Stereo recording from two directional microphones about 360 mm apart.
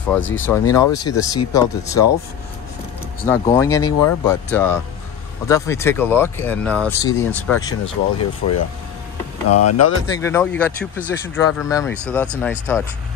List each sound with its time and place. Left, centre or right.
0.1 s speech: centre
3.3 s speech: centre
7.8 s speech: left
10.1 s speech: centre